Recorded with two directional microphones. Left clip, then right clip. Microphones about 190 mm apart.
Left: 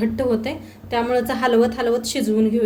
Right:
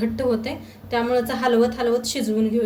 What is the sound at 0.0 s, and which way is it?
A woman's voice, 40° left (ahead or behind).